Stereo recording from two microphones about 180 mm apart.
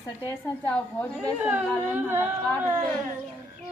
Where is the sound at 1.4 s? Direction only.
10° right (ahead or behind).